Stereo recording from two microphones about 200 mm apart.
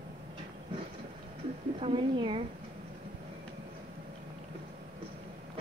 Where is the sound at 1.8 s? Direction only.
25° right (ahead or behind).